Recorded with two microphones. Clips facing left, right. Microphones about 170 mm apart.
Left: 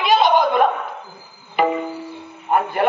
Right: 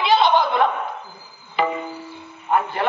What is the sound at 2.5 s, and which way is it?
Speech, 50° left (ahead or behind).